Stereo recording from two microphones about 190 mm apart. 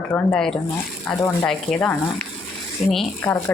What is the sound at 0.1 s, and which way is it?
Speech, 5° left (ahead or behind).